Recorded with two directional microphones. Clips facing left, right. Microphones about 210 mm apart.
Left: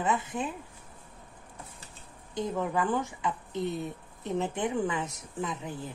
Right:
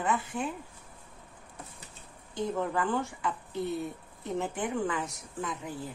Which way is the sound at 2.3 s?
15° left (ahead or behind).